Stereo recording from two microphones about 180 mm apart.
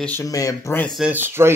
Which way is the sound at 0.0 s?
15° left (ahead or behind).